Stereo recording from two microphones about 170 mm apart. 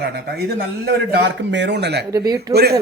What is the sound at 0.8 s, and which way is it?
A man's voice, 80° right.